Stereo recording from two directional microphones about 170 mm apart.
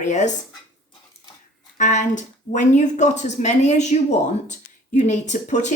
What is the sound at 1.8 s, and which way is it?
Speech, 45° left (ahead or behind).